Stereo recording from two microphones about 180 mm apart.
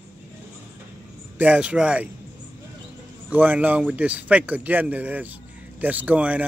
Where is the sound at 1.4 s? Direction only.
5° right (ahead or behind).